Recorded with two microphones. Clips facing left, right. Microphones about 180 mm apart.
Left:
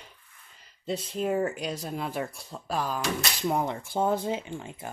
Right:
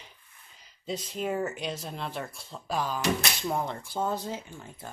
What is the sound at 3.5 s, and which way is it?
Speech, 15° left (ahead or behind).